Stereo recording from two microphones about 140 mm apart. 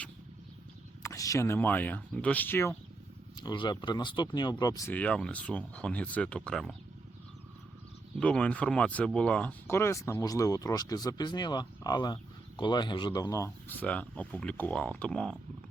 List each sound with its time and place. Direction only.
1.0 s speech: 25° left (ahead or behind)
3.4 s speech: 35° left (ahead or behind)
4.9 s speech: 10° left (ahead or behind)
8.2 s speech: 10° left (ahead or behind)